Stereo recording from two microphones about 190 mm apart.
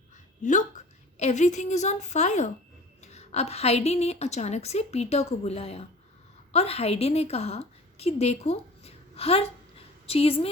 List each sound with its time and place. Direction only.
0.4 s a woman's voice: 40° left (ahead or behind)